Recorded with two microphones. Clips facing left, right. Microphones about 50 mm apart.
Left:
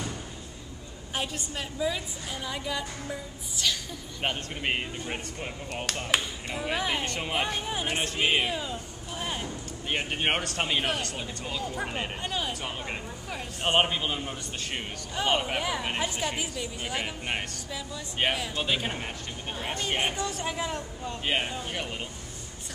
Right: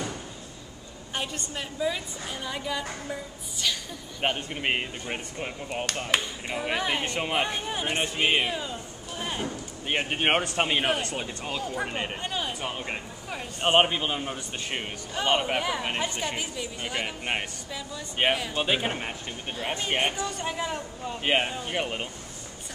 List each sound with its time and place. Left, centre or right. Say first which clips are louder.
1.1 s speech: even; centre
4.2 s speech: right 3 dB; centre
9.2 s music: right 2 dB; centre
9.5 s speech: right 2 dB; centre
11.6 s speech: right 1 dB; centre
18.5 s speech: right 3 dB; centre
21.2 s speech: right 4 dB; right